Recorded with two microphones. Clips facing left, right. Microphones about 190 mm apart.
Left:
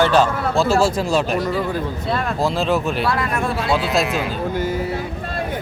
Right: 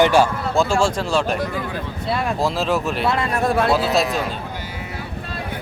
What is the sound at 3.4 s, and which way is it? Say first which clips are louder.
Speech: right 4 dB; 45° right (ahead or behind).